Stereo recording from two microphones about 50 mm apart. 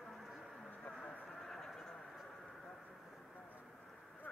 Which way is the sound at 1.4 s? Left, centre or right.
Centre.